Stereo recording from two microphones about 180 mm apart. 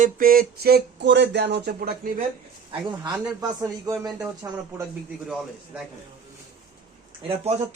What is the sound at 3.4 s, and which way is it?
Speech, 20° right (ahead or behind).